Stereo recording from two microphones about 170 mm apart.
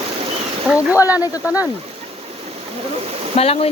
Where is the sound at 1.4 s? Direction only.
5° right (ahead or behind).